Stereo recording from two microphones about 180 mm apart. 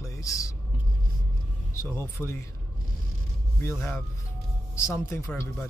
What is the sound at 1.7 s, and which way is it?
Speech, 15° left (ahead or behind).